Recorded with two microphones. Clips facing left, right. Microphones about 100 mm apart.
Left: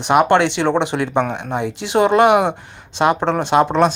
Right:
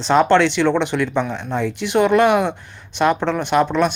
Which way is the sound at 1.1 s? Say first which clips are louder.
Left 3 dB; 65° left (ahead or behind).